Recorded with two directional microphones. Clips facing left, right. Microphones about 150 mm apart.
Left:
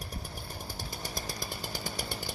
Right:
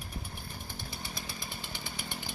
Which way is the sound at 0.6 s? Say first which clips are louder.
Left 4 dB; 40° left (ahead or behind).